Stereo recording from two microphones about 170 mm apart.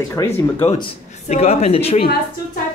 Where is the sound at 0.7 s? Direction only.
40° left (ahead or behind).